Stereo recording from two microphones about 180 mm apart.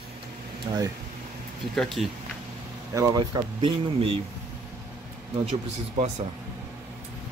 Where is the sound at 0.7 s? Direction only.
20° right (ahead or behind).